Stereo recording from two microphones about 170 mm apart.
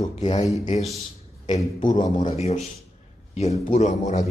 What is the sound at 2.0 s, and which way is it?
Speech, 45° left (ahead or behind).